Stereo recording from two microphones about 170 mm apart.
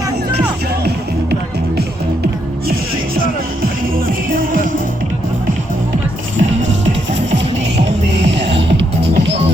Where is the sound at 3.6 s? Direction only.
55° right (ahead or behind).